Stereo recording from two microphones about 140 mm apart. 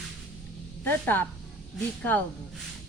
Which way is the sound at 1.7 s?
15° left (ahead or behind).